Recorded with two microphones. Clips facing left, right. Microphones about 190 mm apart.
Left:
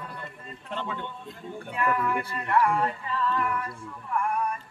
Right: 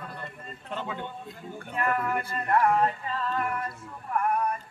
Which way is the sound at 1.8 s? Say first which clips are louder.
Left 1 dB; 40° right (ahead or behind).